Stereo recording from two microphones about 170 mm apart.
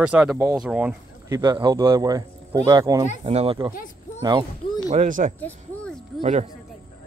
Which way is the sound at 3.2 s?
35° right (ahead or behind).